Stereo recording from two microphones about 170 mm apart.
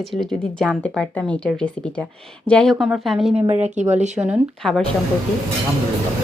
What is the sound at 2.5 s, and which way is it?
Speech, 5° left (ahead or behind).